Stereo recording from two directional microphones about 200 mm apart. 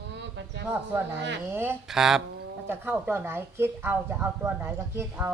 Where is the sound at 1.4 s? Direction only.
10° right (ahead or behind).